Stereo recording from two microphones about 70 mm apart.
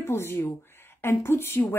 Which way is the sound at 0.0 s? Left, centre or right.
Left.